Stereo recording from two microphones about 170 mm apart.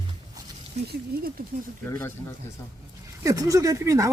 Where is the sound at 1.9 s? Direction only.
15° left (ahead or behind).